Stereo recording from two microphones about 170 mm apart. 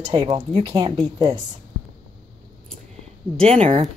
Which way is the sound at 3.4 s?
35° right (ahead or behind).